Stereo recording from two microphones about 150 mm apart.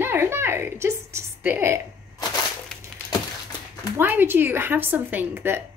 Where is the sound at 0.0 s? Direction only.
15° right (ahead or behind).